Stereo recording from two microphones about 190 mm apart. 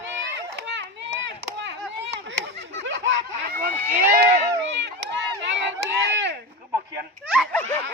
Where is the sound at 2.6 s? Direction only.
75° right (ahead or behind); by 4.2 s 55° right (ahead or behind).